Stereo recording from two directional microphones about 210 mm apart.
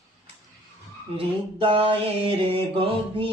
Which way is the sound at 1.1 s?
25° right (ahead or behind).